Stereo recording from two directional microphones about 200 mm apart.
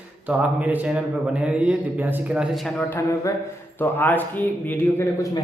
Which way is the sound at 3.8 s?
10° left (ahead or behind).